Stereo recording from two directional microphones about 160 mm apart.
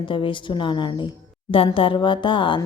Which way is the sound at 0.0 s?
30° left (ahead or behind).